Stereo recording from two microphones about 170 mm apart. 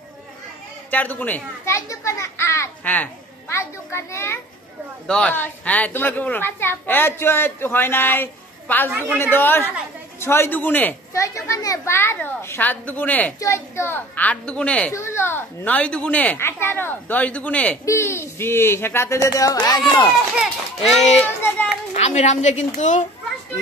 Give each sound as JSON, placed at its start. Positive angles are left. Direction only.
{"t": 0.8, "sound": "a child's voice", "side_deg": 10}
{"t": 8.9, "sound": "speech", "side_deg": -10}
{"t": 9.2, "sound": "a child's voice", "side_deg": 10}
{"t": 20.3, "sound": "a child's voice", "side_deg": 0}
{"t": 21.9, "sound": "a woman's voice", "side_deg": 40}